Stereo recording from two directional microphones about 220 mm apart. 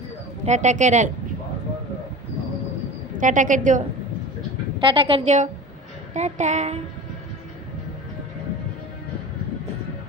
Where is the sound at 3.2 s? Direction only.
35° right (ahead or behind).